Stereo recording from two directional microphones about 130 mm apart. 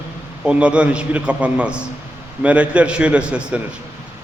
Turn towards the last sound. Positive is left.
turn(degrees=-10)  # may be behind; listen again after turning